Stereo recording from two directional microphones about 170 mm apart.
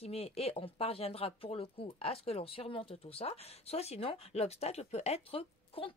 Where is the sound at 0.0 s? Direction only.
35° left (ahead or behind).